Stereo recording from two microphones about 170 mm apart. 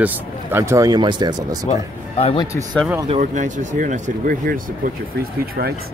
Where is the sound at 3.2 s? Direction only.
50° right (ahead or behind).